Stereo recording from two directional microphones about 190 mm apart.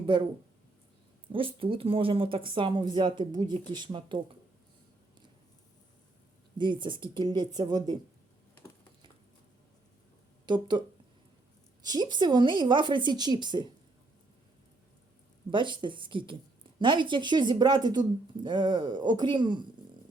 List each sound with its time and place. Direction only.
1.3 s speech: 25° right (ahead or behind)
6.6 s speech: 25° right (ahead or behind)
10.4 s speech: 25° right (ahead or behind)
15.4 s speech: 25° right (ahead or behind)